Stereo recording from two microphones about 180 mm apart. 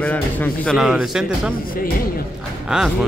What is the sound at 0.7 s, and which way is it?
Speech, 5° right (ahead or behind).